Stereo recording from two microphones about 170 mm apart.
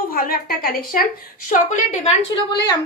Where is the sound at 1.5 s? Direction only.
45° left (ahead or behind).